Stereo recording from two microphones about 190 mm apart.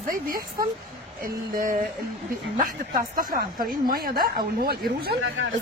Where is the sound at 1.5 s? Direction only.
45° right (ahead or behind).